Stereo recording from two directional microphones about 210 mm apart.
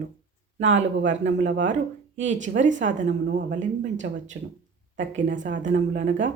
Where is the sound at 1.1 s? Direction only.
60° right (ahead or behind).